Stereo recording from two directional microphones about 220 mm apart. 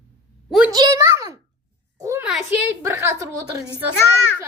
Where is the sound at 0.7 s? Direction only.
20° right (ahead or behind).